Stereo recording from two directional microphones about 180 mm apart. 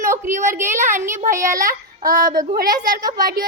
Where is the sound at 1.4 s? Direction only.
20° right (ahead or behind).